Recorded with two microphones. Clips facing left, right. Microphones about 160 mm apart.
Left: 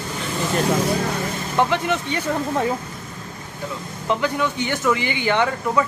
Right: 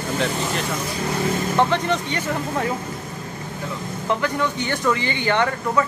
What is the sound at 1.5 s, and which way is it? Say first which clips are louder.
Speech: left 2 dB; 10° left (ahead or behind).